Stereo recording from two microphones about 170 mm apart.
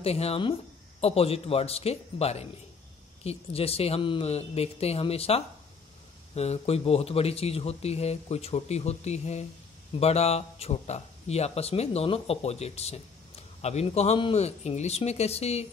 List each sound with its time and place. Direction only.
0.0 s speech: 35° left (ahead or behind)